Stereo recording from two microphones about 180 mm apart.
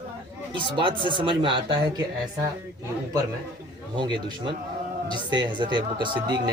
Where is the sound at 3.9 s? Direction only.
25° right (ahead or behind).